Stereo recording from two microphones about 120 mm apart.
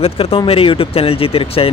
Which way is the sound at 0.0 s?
55° left (ahead or behind).